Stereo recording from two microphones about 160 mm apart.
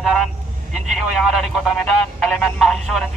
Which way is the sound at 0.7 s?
Centre (ahead or behind).